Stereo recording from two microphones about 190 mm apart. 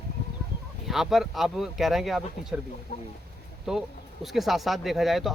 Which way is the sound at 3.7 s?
Centre (ahead or behind).